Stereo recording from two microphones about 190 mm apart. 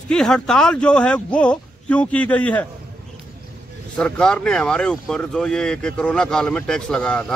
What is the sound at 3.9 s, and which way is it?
Speech, 5° left (ahead or behind).